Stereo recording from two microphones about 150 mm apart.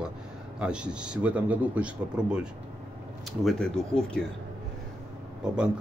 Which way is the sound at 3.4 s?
5° left (ahead or behind).